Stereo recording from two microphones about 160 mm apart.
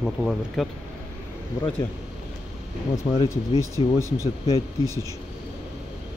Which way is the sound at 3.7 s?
20° left (ahead or behind).